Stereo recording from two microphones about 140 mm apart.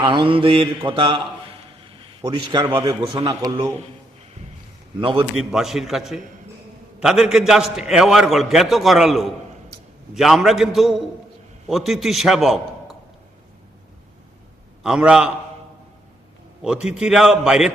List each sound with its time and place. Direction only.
0.0 s a man's voice: 35° right (ahead or behind)
3.2 s speech: 25° right (ahead or behind)
5.3 s a man's voice: 5° right (ahead or behind)
14.8 s a man's voice: 5° right (ahead or behind)
17.0 s a man's voice: 5° right (ahead or behind)